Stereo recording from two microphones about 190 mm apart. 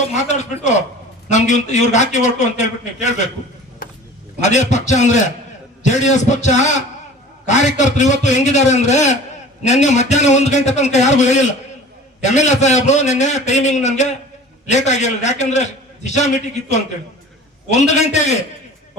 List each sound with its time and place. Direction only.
0.3 s a man's voice: 40° left (ahead or behind)
3.8 s vehicle: 50° left (ahead or behind)
4.4 s a man's voice: 40° left (ahead or behind)